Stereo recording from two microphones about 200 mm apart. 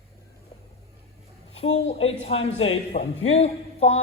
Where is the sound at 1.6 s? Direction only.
30° left (ahead or behind).